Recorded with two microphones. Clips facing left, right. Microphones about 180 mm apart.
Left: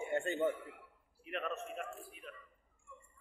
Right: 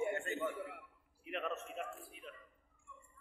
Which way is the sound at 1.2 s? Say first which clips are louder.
Left 1 dB; 20° right (ahead or behind).